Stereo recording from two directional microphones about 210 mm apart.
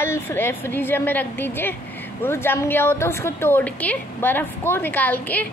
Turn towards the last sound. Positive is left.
turn(degrees=10)  # may be behind; listen again after turning